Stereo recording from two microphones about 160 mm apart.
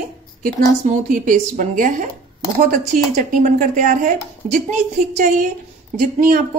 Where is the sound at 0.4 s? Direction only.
55° right (ahead or behind).